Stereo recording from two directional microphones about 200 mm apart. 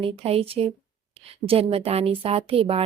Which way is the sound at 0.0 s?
30° right (ahead or behind).